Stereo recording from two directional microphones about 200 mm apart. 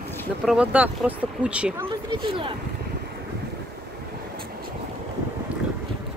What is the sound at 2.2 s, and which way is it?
Speech, 25° right (ahead or behind).